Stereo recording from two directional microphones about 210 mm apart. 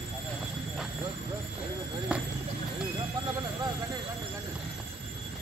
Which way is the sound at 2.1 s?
5° right (ahead or behind).